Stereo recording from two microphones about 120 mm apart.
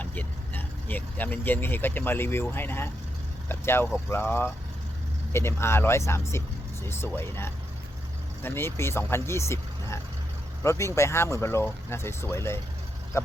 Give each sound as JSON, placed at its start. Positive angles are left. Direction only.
{"t": 0.0, "sound": "speech", "side_deg": 15}